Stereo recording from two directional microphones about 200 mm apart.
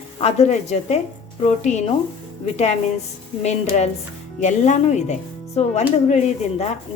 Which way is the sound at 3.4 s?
35° left (ahead or behind).